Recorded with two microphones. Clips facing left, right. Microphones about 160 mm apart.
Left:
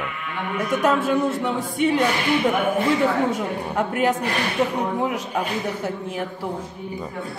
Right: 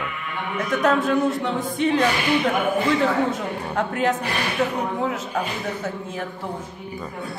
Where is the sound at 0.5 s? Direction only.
5° left (ahead or behind).